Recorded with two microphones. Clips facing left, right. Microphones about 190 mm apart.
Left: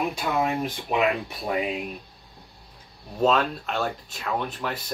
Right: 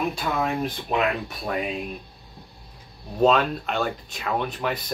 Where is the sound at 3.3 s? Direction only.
Centre (ahead or behind).